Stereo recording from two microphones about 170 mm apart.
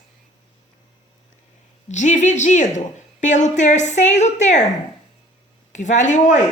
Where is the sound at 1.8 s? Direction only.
45° left (ahead or behind).